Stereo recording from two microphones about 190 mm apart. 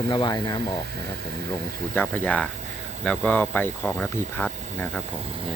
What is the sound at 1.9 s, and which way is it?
Speech, 10° left (ahead or behind).